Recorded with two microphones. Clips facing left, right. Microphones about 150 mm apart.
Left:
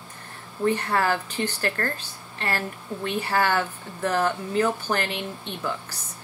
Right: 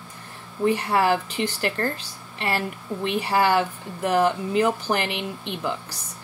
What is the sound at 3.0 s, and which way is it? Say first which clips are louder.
Speech: right 3 dB; 15° right (ahead or behind).